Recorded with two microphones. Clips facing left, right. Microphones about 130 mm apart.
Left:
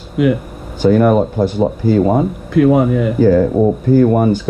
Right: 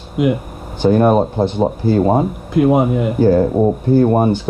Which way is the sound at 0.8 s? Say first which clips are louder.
Left 1 dB; 25° right (ahead or behind).